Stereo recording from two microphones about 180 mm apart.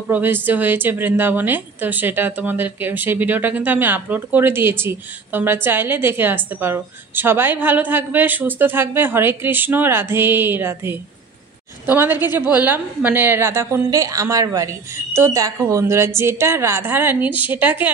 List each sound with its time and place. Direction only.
0.1 s a woman's voice: 10° right (ahead or behind)